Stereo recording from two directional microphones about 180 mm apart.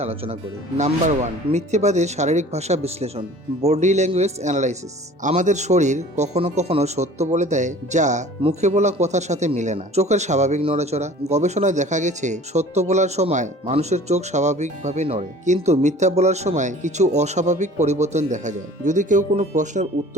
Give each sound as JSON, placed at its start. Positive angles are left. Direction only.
{"t": 0.0, "sound": "speech", "side_deg": -35}